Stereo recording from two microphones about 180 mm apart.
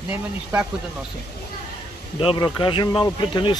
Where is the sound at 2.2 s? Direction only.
25° left (ahead or behind).